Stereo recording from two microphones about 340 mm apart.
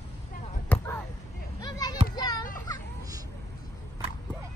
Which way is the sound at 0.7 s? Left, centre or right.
Centre.